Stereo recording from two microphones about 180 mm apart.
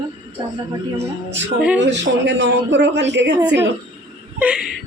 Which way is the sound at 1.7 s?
80° right.